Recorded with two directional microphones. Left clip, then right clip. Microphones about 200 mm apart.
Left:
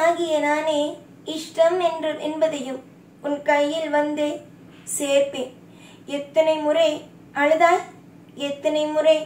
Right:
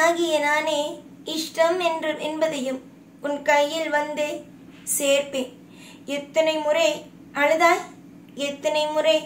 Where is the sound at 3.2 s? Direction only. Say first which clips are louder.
Even; 50° right (ahead or behind).